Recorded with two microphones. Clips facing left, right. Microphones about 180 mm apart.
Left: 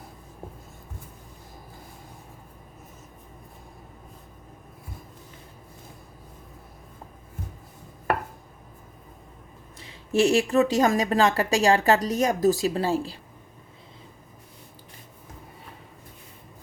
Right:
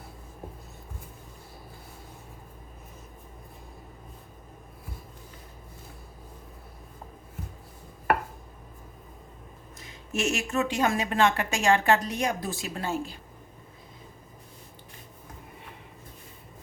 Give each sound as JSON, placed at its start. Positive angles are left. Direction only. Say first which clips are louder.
{"t": 9.7, "sound": "speech", "louder": "left 9 dB", "side_deg": 30}